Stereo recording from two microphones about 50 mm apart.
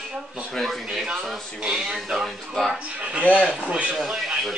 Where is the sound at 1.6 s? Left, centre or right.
Centre.